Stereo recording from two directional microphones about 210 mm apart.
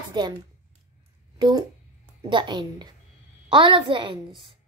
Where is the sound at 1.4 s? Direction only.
20° right (ahead or behind).